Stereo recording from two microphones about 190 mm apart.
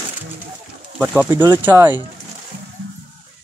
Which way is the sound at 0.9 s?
5° right (ahead or behind).